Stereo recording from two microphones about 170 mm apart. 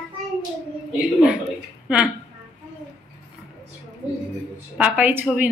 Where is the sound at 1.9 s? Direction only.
5° right (ahead or behind).